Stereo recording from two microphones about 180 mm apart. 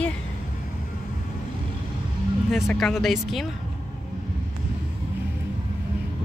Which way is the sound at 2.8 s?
Centre (ahead or behind).